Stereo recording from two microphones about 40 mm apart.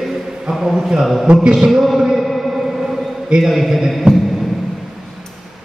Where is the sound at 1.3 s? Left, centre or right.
Right.